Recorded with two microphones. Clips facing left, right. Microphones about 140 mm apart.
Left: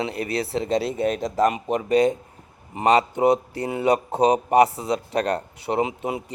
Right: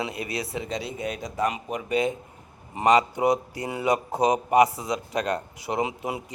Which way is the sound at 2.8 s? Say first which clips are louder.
Left 2 dB; 30° left (ahead or behind).